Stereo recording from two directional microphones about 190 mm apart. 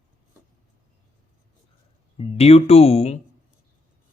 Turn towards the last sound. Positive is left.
turn(degrees=35)  # may be behind; listen again after turning